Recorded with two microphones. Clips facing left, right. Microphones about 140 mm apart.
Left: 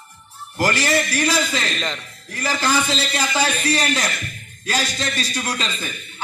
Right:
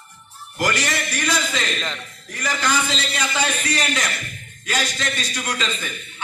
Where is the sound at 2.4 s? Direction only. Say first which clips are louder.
Left 2 dB; 30° left (ahead or behind).